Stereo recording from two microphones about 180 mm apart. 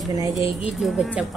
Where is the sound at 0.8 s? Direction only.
5° right (ahead or behind).